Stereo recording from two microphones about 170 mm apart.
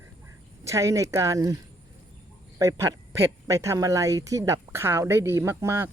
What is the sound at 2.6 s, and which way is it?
Speech, 15° right (ahead or behind).